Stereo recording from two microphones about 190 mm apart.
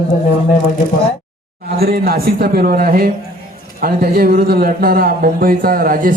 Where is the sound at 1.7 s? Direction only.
55° right (ahead or behind).